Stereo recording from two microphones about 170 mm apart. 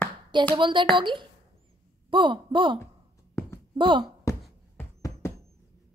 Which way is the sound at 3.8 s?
30° right (ahead or behind).